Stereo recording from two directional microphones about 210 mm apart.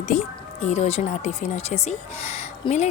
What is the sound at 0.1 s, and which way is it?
Speech, 30° left (ahead or behind).